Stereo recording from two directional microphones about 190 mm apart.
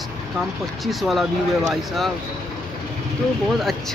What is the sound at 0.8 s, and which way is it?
Speech, centre (ahead or behind).